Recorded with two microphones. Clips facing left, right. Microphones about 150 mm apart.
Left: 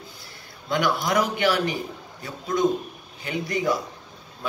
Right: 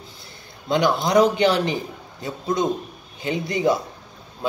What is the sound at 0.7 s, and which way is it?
A man's voice, 25° right (ahead or behind).